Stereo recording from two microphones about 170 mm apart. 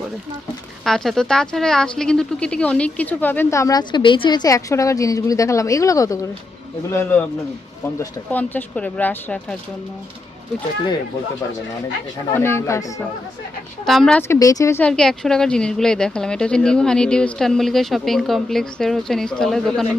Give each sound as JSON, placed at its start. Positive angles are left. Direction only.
{"t": 0.9, "sound": "speech", "side_deg": 0}
{"t": 12.3, "sound": "speech", "side_deg": 15}
{"t": 13.8, "sound": "speech", "side_deg": 0}
{"t": 14.3, "sound": "speech", "side_deg": 20}